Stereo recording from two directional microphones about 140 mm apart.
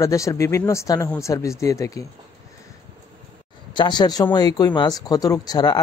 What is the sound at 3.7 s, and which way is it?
Speech, 35° left (ahead or behind).